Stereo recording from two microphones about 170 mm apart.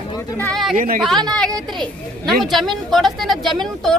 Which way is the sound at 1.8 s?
Centre (ahead or behind).